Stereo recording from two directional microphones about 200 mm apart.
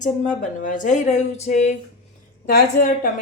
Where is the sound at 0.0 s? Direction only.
40° left (ahead or behind).